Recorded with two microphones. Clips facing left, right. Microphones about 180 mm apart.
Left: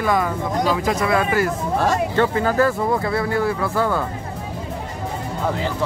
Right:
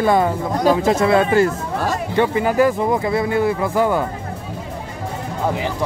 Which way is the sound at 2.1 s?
15° right (ahead or behind).